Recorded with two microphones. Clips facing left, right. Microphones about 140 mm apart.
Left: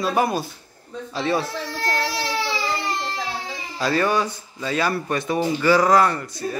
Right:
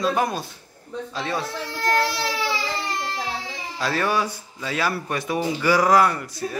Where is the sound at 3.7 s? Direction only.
Centre (ahead or behind).